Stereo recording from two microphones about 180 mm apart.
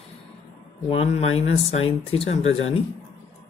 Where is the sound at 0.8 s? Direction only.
35° left (ahead or behind).